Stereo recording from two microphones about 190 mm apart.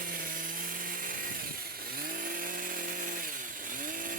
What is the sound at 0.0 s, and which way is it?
Chainsaw, 45° right (ahead or behind).